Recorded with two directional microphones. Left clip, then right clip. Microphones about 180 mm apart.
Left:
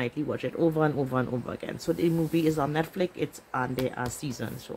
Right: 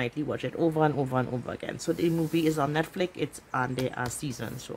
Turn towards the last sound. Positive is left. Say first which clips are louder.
# even
turn(degrees=-5)  # may be behind; listen again after turning